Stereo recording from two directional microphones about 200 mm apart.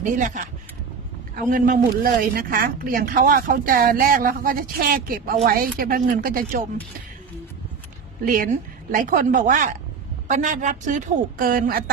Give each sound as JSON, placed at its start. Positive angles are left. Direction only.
{"t": 0.0, "sound": "a woman's voice", "side_deg": -40}
{"t": 8.2, "sound": "a woman's voice", "side_deg": -45}